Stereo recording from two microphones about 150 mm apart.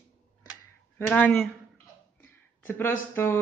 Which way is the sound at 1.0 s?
5° left (ahead or behind).